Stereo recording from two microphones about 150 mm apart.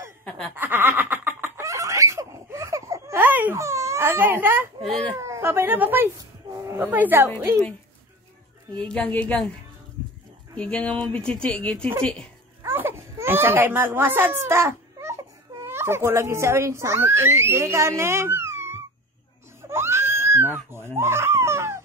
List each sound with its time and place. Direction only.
0.2 s laughter: 5° left (ahead or behind)
0.6 s a sound: 15° right (ahead or behind)
4.8 s a woman's voice: centre (ahead or behind)
5.2 s a woman's voice: 20° right (ahead or behind)
8.7 s speech: 5° left (ahead or behind)
10.5 s a woman's voice: 5° left (ahead or behind)
12.6 s speech: 15° right (ahead or behind)
19.7 s a sound: 15° right (ahead or behind)